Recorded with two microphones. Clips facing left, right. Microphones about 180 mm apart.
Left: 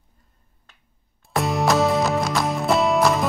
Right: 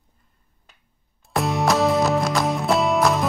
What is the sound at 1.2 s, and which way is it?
Music, centre (ahead or behind).